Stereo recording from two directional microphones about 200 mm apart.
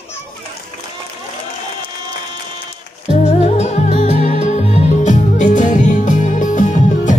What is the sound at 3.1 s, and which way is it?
Music, 35° left (ahead or behind).